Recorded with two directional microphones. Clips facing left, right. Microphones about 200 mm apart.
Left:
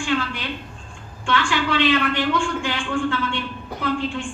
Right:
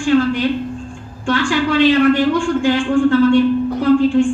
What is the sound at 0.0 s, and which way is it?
A man's voice, 40° right (ahead or behind).